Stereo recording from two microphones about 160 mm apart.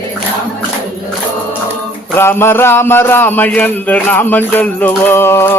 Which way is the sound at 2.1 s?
15° left (ahead or behind).